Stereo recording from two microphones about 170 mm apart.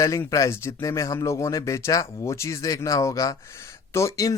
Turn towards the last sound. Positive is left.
turn(degrees=20)  # may be behind; listen again after turning